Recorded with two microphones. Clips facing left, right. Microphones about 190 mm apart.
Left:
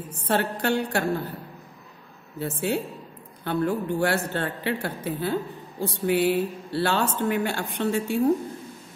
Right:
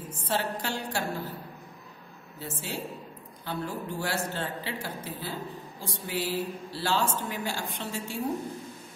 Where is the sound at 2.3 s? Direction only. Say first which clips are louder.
Left 10 dB; 60° left (ahead or behind).